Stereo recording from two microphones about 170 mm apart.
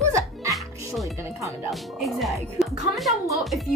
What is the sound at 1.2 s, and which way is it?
Speech, 15° right (ahead or behind).